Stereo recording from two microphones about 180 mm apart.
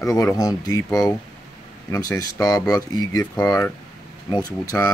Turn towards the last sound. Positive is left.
turn(degrees=20)  # may be behind; listen again after turning